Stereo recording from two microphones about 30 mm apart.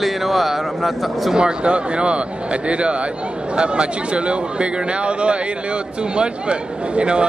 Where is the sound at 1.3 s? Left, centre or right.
Right.